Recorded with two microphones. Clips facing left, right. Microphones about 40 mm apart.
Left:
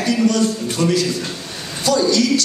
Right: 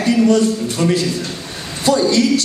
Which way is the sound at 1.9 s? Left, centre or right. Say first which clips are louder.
Right 2 dB; right.